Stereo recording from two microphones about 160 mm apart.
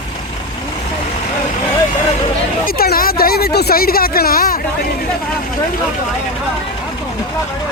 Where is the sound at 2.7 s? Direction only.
70° left (ahead or behind).